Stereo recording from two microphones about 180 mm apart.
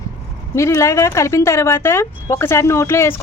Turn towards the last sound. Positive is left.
turn(degrees=15)  # may be behind; listen again after turning